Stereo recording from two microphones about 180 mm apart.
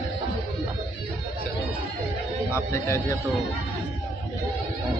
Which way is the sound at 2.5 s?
15° left (ahead or behind).